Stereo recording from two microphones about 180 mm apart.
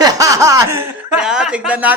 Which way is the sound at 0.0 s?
20° right (ahead or behind).